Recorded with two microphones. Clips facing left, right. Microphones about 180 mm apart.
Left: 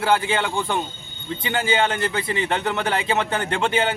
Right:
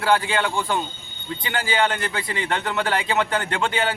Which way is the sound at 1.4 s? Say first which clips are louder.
Left 4 dB; 20° left (ahead or behind).